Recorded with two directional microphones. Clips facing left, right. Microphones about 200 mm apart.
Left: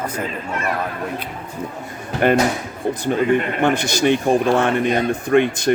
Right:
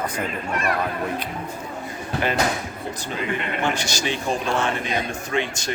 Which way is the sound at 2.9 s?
50° left (ahead or behind).